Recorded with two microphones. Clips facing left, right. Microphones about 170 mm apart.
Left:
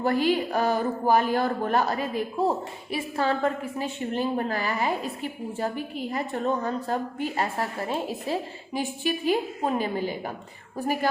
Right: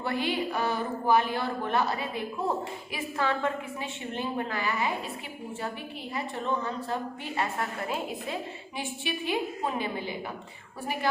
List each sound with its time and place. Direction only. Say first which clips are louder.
0.0 s a woman's voice: left 6 dB; 40° left (ahead or behind)